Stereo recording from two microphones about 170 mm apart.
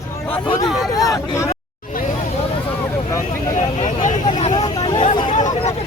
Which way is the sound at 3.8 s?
45° left (ahead or behind).